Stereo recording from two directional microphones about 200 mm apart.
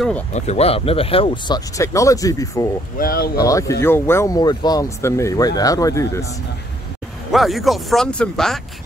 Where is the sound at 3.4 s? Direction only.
15° left (ahead or behind).